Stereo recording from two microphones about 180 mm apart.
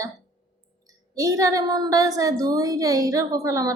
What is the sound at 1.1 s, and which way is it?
A woman's voice, 20° right (ahead or behind).